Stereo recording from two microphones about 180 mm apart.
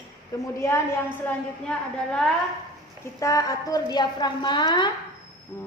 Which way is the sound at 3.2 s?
20° left (ahead or behind).